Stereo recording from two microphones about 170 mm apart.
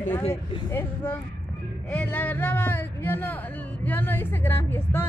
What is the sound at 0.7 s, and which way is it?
A woman's voice, 10° left (ahead or behind).